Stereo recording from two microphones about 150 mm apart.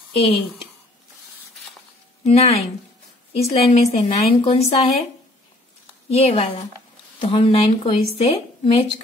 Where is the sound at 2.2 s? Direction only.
45° left (ahead or behind).